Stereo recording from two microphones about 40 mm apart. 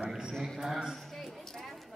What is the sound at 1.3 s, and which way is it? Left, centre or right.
Clip-clop, centre.